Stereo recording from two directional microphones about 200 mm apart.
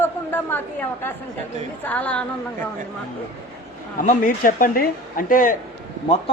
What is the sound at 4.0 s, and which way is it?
A man's voice, 40° left (ahead or behind).